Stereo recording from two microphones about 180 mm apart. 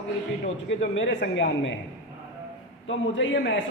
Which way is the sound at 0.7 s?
85° left.